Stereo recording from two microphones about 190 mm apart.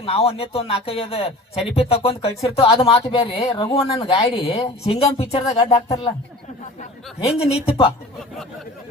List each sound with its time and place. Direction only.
0.0 s speech: 30° left (ahead or behind)
7.3 s speech: 30° left (ahead or behind)